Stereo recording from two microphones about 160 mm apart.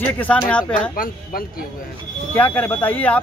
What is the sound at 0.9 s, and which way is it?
Speech, 60° left (ahead or behind).